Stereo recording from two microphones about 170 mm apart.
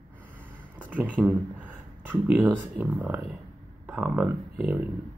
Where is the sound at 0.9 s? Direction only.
10° right (ahead or behind).